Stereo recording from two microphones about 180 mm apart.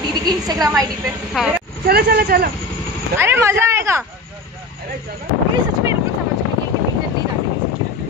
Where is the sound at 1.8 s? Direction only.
60° right (ahead or behind).